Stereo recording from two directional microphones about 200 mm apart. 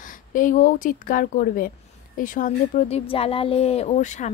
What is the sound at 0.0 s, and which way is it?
Speech, 40° left (ahead or behind).